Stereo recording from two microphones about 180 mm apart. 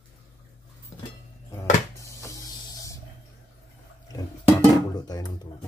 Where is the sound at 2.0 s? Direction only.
15° left (ahead or behind).